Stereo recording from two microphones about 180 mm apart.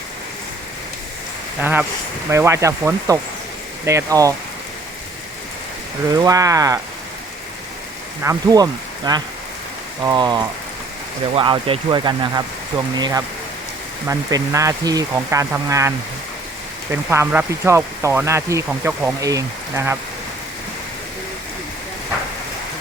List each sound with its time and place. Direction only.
1.6 s speech: 10° right (ahead or behind)
6.1 s speech: 20° right (ahead or behind)
8.2 s speech: 20° right (ahead or behind)
16.9 s speech: 10° right (ahead or behind)